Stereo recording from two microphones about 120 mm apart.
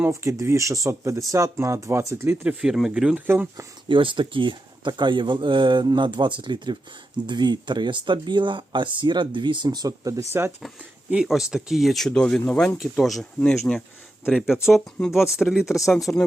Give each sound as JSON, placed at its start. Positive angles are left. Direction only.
{"t": 0.1, "sound": "speech", "side_deg": -25}
{"t": 3.8, "sound": "speech", "side_deg": -45}
{"t": 11.1, "sound": "speech", "side_deg": -5}
{"t": 13.7, "sound": "speech", "side_deg": 15}
{"t": 14.3, "sound": "speech", "side_deg": -5}
{"t": 16.1, "sound": "speech", "side_deg": 10}